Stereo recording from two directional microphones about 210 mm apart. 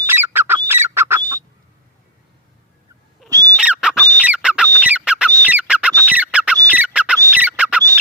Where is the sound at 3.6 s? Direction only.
5° right (ahead or behind).